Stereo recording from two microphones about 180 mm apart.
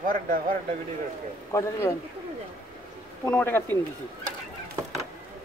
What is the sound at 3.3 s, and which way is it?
Speech, 10° left (ahead or behind).